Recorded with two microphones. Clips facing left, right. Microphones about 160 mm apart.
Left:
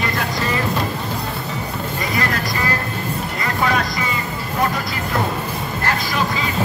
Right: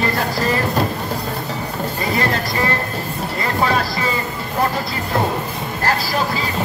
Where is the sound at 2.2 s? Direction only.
30° right (ahead or behind).